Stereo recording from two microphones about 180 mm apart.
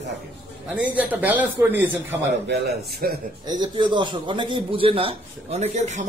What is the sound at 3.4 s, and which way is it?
A man's voice, 25° right (ahead or behind).